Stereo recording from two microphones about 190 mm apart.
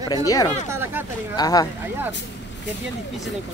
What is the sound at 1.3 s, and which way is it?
Speech, 20° left (ahead or behind).